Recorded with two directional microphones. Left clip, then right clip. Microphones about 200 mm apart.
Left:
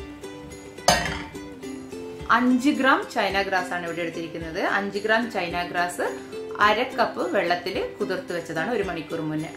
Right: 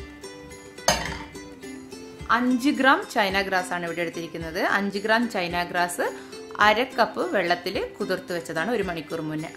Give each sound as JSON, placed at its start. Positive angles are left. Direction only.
{"t": 2.3, "sound": "speech", "side_deg": -15}
{"t": 2.6, "sound": "speech", "side_deg": -30}